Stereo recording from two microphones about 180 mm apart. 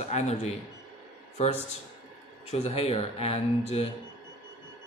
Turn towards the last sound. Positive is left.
turn(degrees=35)  # may be behind; listen again after turning